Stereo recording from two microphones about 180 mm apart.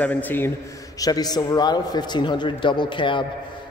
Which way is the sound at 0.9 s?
20° left (ahead or behind).